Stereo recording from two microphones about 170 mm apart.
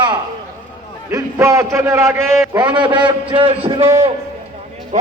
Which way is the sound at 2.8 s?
30° right (ahead or behind).